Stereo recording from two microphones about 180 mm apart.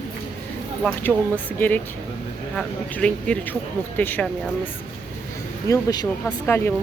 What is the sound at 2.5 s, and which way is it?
Speech, 5° left (ahead or behind).